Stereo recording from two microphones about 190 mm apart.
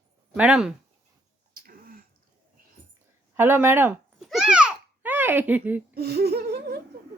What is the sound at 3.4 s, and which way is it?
Babbling, 10° right (ahead or behind).